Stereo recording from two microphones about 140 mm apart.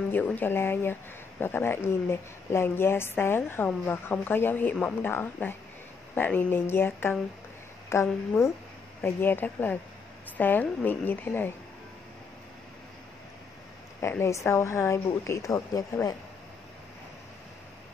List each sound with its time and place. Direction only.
0.1 s a woman's voice: 15° left (ahead or behind)
14.0 s a woman's voice: 20° left (ahead or behind)